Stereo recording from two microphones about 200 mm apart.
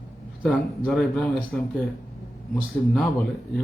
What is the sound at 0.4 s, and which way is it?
A man's voice, centre (ahead or behind).